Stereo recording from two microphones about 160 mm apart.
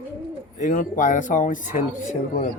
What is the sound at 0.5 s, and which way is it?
Speech, 55° left (ahead or behind).